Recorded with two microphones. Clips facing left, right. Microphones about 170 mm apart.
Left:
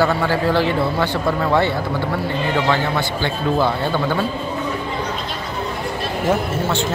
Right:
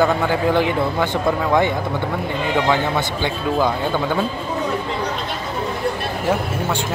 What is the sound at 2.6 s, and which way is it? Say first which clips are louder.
A man's voice: even; 15° right (ahead or behind).